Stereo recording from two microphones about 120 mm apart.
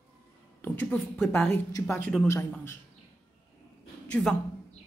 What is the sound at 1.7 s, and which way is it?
Speech, 20° left (ahead or behind).